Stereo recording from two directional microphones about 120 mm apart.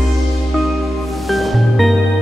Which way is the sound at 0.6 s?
Centre (ahead or behind).